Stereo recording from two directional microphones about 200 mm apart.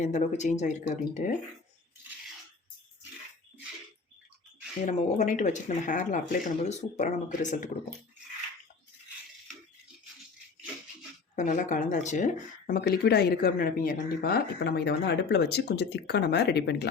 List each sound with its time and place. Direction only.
0.0 s speech: 35° left (ahead or behind)
4.9 s speech: 35° left (ahead or behind)
11.3 s speech: 40° left (ahead or behind); by 16.9 s 55° left (ahead or behind)